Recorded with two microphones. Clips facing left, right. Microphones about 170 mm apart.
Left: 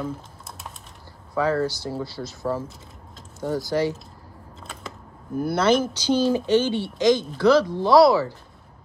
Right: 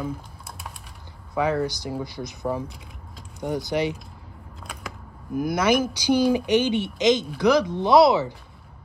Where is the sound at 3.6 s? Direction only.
20° right (ahead or behind).